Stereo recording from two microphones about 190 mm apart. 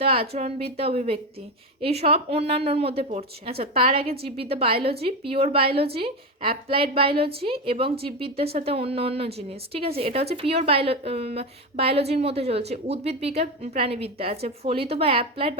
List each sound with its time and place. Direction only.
0.0 s a woman's voice: 30° right (ahead or behind)